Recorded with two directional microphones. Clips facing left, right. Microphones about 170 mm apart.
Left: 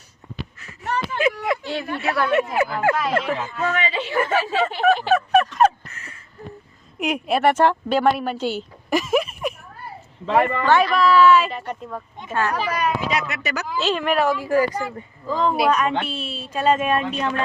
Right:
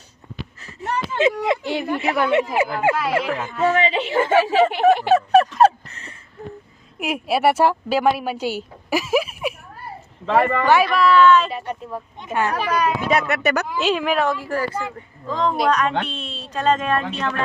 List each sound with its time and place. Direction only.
0.6 s speech: 30° right (ahead or behind)
2.9 s speech: 10° right (ahead or behind)
3.6 s speech: 25° right (ahead or behind)
5.1 s fowl: 30° right (ahead or behind)
7.0 s a woman's voice: 5° right (ahead or behind)
10.7 s speech: 5° right (ahead or behind)
11.5 s speech: 10° right (ahead or behind)
13.1 s speech: 55° right (ahead or behind)
13.7 s speech: 10° right (ahead or behind)
14.3 s speech: 15° left (ahead or behind)